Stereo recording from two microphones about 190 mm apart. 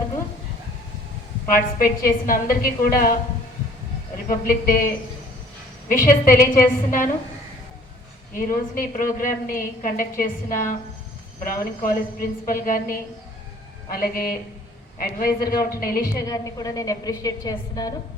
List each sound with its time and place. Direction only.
1.5 s a woman's voice: 45° left (ahead or behind)
4.3 s a woman's voice: 50° left (ahead or behind)
8.4 s a woman's voice: 45° left (ahead or behind)
16.1 s a woman's voice: 20° left (ahead or behind)